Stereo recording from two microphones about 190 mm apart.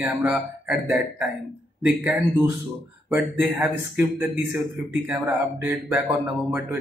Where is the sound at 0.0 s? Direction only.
5° right (ahead or behind).